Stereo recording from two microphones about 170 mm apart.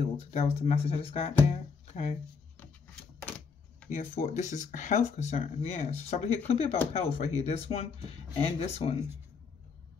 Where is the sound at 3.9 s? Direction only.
45° left (ahead or behind).